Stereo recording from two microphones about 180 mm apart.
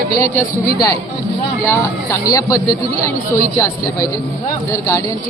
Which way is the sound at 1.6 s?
15° left (ahead or behind).